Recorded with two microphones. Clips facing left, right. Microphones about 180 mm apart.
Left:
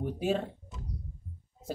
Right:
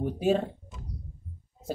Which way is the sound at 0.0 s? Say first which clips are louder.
Right 5 dB; 30° right (ahead or behind).